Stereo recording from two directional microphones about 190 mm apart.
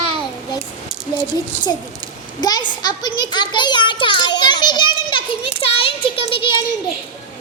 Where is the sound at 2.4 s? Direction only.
25° left (ahead or behind).